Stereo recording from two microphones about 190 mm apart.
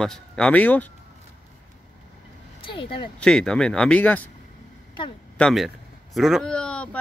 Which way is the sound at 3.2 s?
5° left (ahead or behind).